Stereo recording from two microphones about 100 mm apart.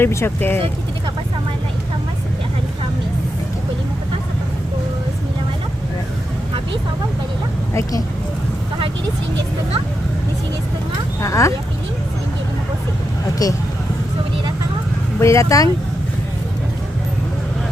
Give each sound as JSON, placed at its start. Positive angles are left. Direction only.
{"t": 0.0, "sound": "speech", "side_deg": 25}
{"t": 7.7, "sound": "speech", "side_deg": 30}
{"t": 11.2, "sound": "speech", "side_deg": 30}
{"t": 13.4, "sound": "speech", "side_deg": 40}
{"t": 15.2, "sound": "speech", "side_deg": 30}